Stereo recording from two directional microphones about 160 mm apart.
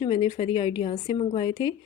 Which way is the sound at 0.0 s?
30° left (ahead or behind).